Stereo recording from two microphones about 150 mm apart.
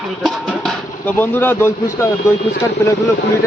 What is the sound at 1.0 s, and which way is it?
Speech, 15° left (ahead or behind).